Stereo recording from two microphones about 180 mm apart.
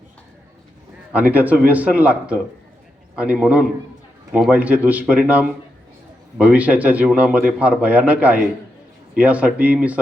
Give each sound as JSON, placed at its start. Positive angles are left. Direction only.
{"t": 1.1, "sound": "a man's voice", "side_deg": -10}